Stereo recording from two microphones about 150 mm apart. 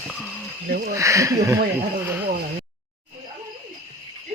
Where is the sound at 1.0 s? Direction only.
20° right (ahead or behind).